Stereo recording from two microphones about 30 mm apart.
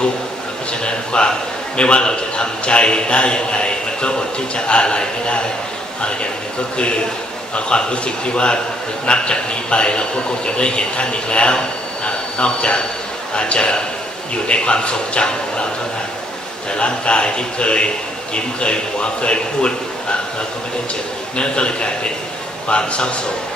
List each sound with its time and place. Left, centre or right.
0.8 s a sound: left
1.8 s a man's voice: left
7.5 s a man's voice: left
16.7 s a man's voice: left
21.4 s a man's voice: left